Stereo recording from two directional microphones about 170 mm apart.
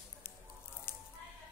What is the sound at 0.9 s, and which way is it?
Squish, 15° left (ahead or behind).